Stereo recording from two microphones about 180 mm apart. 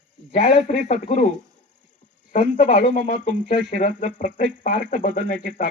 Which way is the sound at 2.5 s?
45° left (ahead or behind).